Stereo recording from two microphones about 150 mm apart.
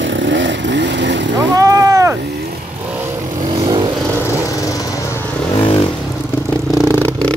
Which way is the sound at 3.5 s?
30° right (ahead or behind).